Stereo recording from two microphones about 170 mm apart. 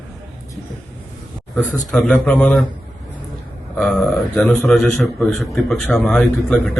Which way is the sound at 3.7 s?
5° left (ahead or behind).